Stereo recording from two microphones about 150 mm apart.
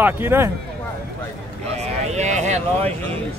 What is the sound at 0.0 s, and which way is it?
Speech, 15° right (ahead or behind).